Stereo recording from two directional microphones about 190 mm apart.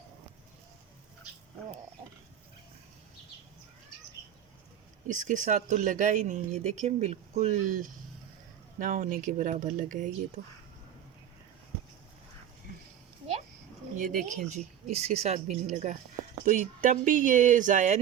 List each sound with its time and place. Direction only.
5.0 s speech: 45° right (ahead or behind)
14.0 s speech: 45° right (ahead or behind)